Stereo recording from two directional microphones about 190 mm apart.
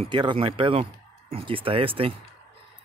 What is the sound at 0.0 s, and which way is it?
Speech, 25° right (ahead or behind).